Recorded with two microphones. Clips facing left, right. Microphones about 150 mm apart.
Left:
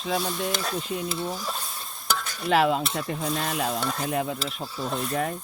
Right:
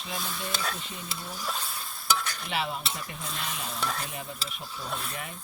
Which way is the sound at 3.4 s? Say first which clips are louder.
Left 7 dB; 90° left.